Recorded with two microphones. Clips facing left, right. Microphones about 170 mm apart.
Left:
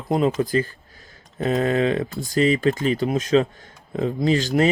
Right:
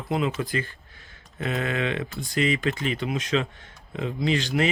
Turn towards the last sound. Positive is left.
turn(degrees=40)  # may be behind; listen again after turning